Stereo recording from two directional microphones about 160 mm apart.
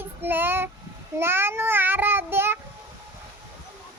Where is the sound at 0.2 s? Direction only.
10° right (ahead or behind).